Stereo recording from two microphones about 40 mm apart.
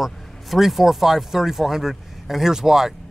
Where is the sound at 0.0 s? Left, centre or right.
Centre.